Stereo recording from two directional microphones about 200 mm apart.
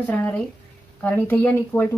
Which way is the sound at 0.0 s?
10° left (ahead or behind).